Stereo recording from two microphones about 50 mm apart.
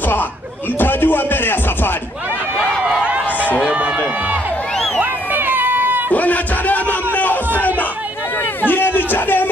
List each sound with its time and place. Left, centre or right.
0.7 s music: left
3.0 s run: right
3.7 s speech: right
5.0 s a sound: right
6.1 s speech: left
7.2 s a sound: left
8.6 s music: left